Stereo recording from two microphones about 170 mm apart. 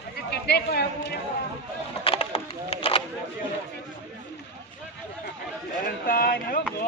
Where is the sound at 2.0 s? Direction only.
35° left (ahead or behind).